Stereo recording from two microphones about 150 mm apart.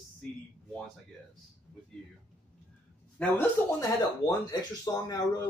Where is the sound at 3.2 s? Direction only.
10° left (ahead or behind).